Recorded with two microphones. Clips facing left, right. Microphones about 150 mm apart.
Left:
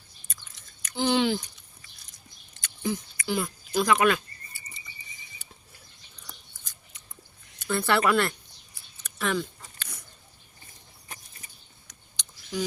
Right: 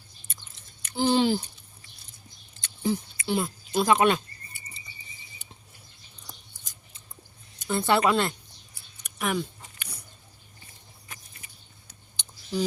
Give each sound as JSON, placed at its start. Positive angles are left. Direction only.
{"t": 0.3, "sound": "chewing", "side_deg": -25}
{"t": 2.6, "sound": "a sound", "side_deg": -30}
{"t": 6.2, "sound": "scissors", "side_deg": -30}
{"t": 7.6, "sound": "speech", "side_deg": -20}
{"t": 9.0, "sound": "a sound", "side_deg": -15}
{"t": 11.9, "sound": "clicking", "side_deg": -30}